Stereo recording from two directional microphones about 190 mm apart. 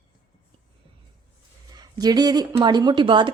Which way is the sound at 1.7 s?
20° right (ahead or behind).